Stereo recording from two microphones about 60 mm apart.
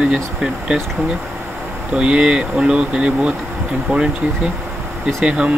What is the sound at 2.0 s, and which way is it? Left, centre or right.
Speech, centre.